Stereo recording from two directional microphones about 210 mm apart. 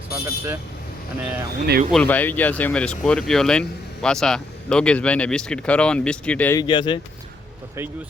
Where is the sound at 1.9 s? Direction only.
5° left (ahead or behind).